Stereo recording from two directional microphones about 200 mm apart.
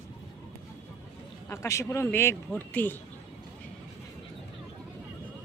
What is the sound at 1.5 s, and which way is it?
A man's voice, 15° left (ahead or behind).